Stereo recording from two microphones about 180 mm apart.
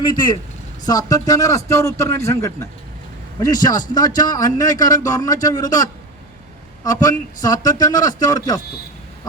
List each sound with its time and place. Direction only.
0.1 s a man's voice: 25° left (ahead or behind)